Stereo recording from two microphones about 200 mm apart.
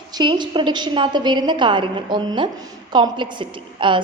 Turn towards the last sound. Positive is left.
turn(degrees=-25)  # may be behind; listen again after turning